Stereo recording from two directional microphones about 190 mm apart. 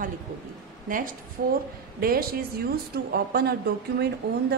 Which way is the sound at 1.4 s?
50° right (ahead or behind).